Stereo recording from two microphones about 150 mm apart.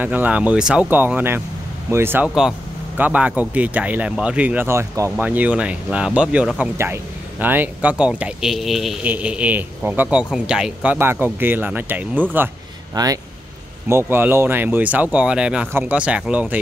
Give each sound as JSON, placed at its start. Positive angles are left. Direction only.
{"t": 0.0, "sound": "speech", "side_deg": -10}
{"t": 12.9, "sound": "speech", "side_deg": -25}